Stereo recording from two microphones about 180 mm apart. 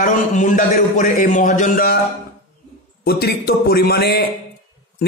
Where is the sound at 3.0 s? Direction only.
60° left (ahead or behind).